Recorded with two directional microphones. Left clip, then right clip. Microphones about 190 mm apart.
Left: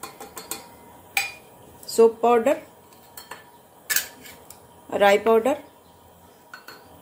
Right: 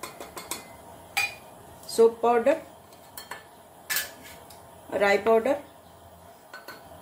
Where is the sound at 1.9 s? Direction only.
25° left (ahead or behind).